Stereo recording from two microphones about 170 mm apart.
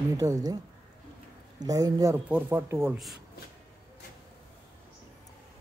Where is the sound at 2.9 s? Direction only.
Centre (ahead or behind).